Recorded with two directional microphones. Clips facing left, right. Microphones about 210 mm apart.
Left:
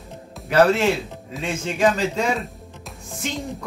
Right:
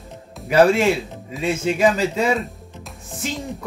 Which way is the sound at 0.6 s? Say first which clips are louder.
Right 2 dB; 10° right (ahead or behind).